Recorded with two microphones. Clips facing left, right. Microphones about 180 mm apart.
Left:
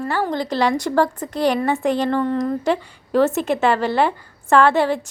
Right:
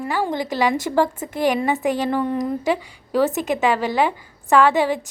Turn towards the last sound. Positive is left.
turn(degrees=-15)  # may be behind; listen again after turning